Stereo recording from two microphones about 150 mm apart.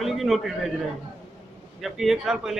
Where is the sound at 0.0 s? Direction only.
Centre (ahead or behind).